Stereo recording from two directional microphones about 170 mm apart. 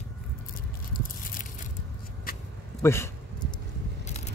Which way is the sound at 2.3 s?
60° left (ahead or behind).